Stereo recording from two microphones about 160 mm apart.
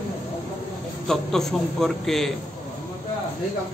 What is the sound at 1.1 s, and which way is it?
A man's voice, centre (ahead or behind).